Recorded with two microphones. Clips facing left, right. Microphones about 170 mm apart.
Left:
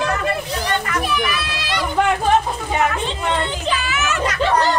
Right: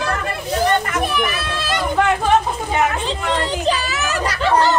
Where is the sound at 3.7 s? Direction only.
40° right (ahead or behind).